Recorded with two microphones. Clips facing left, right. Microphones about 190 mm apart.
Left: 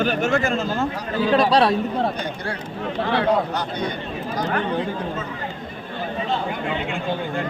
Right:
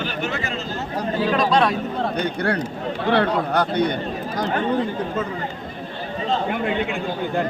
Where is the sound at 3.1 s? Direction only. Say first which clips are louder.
Right 2 dB; 60° right (ahead or behind).